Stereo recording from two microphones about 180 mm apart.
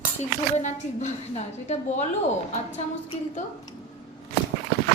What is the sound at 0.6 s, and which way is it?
A woman's voice, 40° left (ahead or behind).